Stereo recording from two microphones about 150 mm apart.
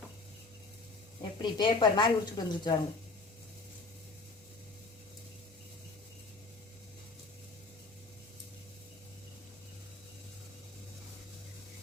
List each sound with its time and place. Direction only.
1.2 s speech: 30° left (ahead or behind)